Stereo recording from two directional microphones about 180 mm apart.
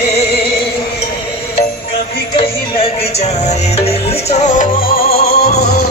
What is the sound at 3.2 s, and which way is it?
Music, 35° left (ahead or behind).